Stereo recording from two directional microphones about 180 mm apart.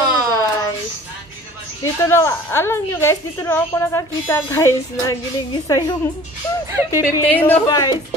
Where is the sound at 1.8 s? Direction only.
15° left (ahead or behind).